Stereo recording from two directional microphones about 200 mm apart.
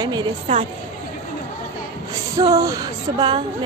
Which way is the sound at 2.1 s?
15° right (ahead or behind).